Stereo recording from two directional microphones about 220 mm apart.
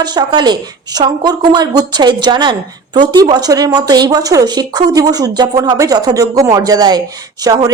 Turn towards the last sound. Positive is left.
turn(degrees=-15)  # may be behind; listen again after turning